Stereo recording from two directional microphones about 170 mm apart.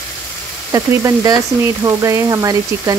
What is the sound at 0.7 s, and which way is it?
Speech, 20° right (ahead or behind).